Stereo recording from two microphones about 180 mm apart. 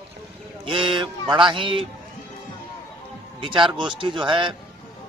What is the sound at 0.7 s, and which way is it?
A man's voice, 30° right (ahead or behind).